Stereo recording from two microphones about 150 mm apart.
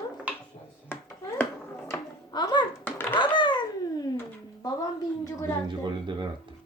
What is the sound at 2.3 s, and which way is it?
Music, 30° left (ahead or behind).